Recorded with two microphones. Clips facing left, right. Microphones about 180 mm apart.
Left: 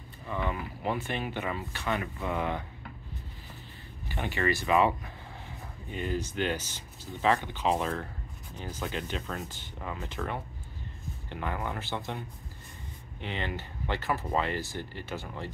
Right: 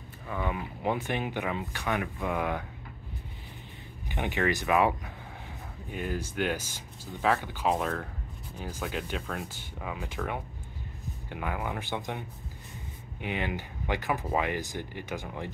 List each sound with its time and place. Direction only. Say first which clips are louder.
0.3 s speech: even; 10° right (ahead or behind)
4.1 s speech: right 1 dB; 15° right (ahead or behind)